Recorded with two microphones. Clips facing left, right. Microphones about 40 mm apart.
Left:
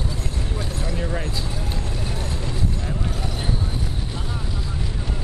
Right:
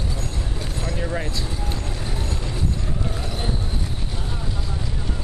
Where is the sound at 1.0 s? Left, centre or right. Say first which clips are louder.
Right 2 dB; centre.